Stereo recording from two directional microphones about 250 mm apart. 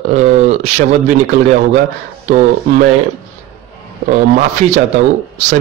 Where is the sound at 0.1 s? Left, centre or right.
Right.